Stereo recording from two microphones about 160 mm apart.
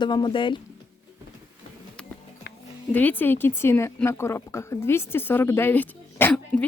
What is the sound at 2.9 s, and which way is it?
Speech, 10° left (ahead or behind).